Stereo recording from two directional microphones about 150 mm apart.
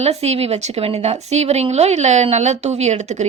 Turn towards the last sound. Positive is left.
turn(degrees=-50)  # may be behind; listen again after turning